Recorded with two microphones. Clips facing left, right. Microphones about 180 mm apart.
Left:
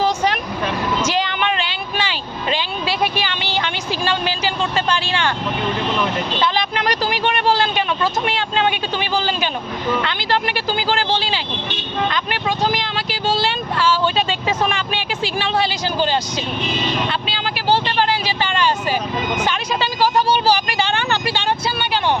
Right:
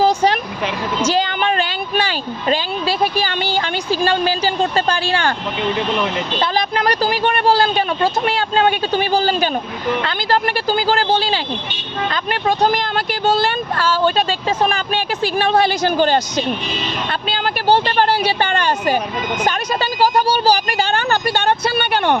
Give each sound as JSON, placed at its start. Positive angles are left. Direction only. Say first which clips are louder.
{"t": 0.0, "sound": "vehicle", "louder": "right 4 dB", "side_deg": -35}
{"t": 1.0, "sound": "a sound", "louder": "right 3 dB", "side_deg": -35}
{"t": 6.4, "sound": "speech", "louder": "right 3 dB", "side_deg": -40}
{"t": 12.1, "sound": "speech", "louder": "right 3 dB", "side_deg": -45}